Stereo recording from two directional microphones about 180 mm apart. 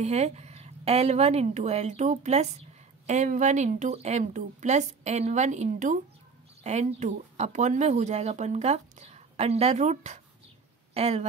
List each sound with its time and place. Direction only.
0.0 s speech: 35° right (ahead or behind)